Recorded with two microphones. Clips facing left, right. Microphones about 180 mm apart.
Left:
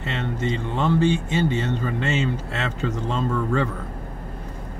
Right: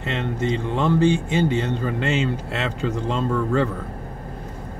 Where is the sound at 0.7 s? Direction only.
10° right (ahead or behind).